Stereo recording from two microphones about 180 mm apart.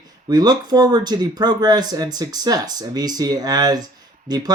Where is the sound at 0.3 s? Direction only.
20° right (ahead or behind).